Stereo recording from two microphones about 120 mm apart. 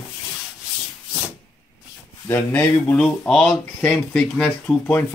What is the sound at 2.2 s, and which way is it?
Speech, 20° left (ahead or behind).